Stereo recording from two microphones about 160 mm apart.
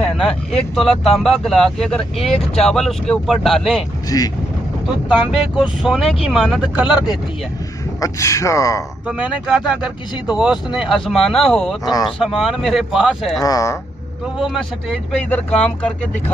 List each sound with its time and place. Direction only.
0.0 s speech: 5° left (ahead or behind)
4.1 s speech: 25° left (ahead or behind)
5.0 s speech: 5° right (ahead or behind)
6.9 s speech: 25° left (ahead or behind)
9.0 s speech: 5° right (ahead or behind)
13.4 s speech: 20° left (ahead or behind)
14.4 s speech: centre (ahead or behind)